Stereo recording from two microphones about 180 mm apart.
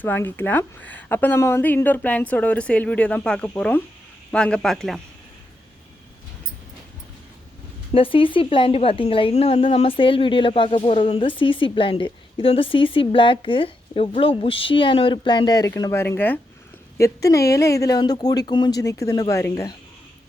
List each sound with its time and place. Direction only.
0.0 s a woman's voice: 10° left (ahead or behind)
7.9 s a woman's voice: 30° left (ahead or behind)